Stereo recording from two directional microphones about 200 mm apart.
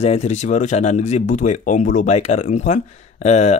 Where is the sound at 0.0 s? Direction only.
35° left (ahead or behind).